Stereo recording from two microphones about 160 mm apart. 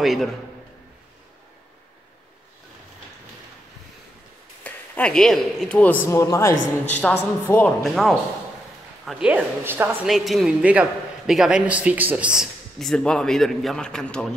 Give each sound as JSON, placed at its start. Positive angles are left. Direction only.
{"t": 0.0, "sound": "a man's voice", "side_deg": 0}
{"t": 4.6, "sound": "speech", "side_deg": 5}
{"t": 6.0, "sound": "speech", "side_deg": 20}
{"t": 6.9, "sound": "speech", "side_deg": 10}
{"t": 7.8, "sound": "a man's voice", "side_deg": 0}
{"t": 10.0, "sound": "a man's voice", "side_deg": 0}